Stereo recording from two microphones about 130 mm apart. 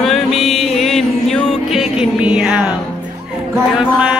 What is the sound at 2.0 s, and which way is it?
Speech, 10° right (ahead or behind).